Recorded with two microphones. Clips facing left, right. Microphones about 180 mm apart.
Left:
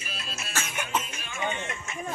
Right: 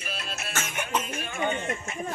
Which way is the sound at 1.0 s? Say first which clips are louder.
Right 6 dB; 55° right (ahead or behind).